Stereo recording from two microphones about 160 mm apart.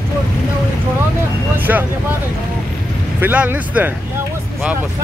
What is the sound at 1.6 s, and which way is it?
Speech, 10° right (ahead or behind).